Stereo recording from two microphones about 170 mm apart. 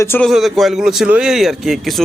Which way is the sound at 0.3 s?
Centre (ahead or behind).